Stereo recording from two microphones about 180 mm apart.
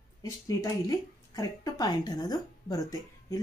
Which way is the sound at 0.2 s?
20° left (ahead or behind).